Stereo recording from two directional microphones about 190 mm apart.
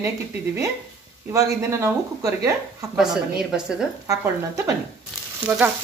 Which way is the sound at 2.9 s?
5° right (ahead or behind).